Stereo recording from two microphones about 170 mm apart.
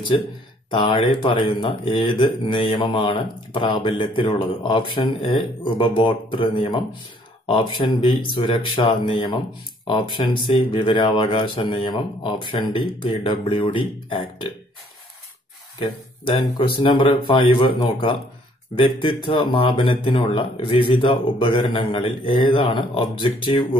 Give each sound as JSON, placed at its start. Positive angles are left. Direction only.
{"t": 0.1, "sound": "speech", "side_deg": 30}
{"t": 15.8, "sound": "speech", "side_deg": 30}